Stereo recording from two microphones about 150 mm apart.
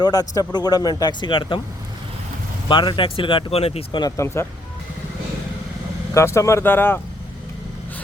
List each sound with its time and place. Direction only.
0.0 s speech: 25° left (ahead or behind)
2.6 s speech: 35° left (ahead or behind)
4.0 s speech: 20° left (ahead or behind)
6.1 s speech: 20° left (ahead or behind)